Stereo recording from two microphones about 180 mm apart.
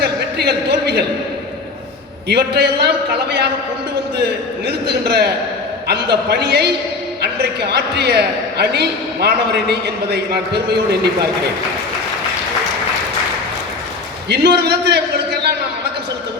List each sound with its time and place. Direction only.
0.0 s a man's voice: 65° right (ahead or behind)
2.3 s a man's voice: 65° right (ahead or behind)
4.6 s a man's voice: 65° right (ahead or behind)
14.3 s a man's voice: 65° right (ahead or behind)